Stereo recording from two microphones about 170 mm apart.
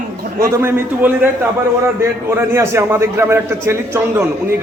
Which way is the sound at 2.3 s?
15° right (ahead or behind).